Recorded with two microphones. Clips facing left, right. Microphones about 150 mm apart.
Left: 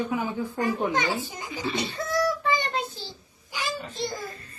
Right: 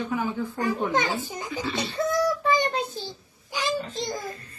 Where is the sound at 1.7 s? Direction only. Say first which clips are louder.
Right 3 dB; 20° right (ahead or behind).